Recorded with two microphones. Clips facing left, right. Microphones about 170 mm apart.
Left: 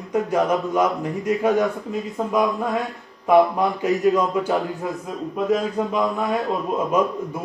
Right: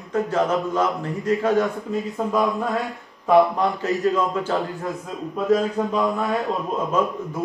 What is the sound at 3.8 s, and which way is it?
Speech, 15° left (ahead or behind).